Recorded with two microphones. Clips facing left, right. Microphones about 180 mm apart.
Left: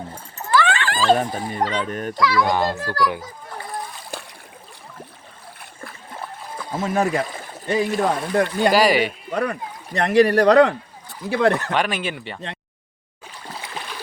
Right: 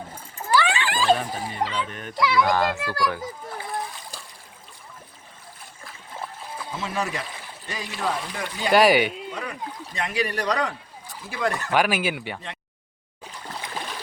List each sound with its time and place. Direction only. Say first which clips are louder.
0.5 s a sound: left 2 dB; 15° right (ahead or behind)
1.1 s speech: left 4 dB; 45° left (ahead or behind)
2.4 s a child's voice: even; 20° left (ahead or behind)
2.7 s a child's voice: left 2 dB; 40° left (ahead or behind)
4.1 s a sound: left 9 dB; 65° left (ahead or behind)
6.7 s speech: left 9 dB; 50° left (ahead or behind)
8.7 s speech: right 4 dB; centre (ahead or behind)
9.3 s speech: left 9 dB; 65° left (ahead or behind)
11.7 s speech: right 1 dB; 5° right (ahead or behind)